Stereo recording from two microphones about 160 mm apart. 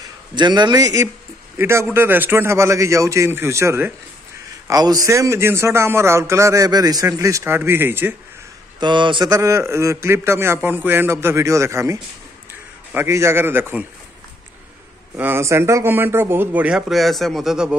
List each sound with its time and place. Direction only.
0.3 s a man's voice: 30° right (ahead or behind); by 8.2 s 10° right (ahead or behind)
8.7 s a man's voice: 30° right (ahead or behind); by 13.8 s 15° right (ahead or behind)
15.1 s a man's voice: 15° right (ahead or behind)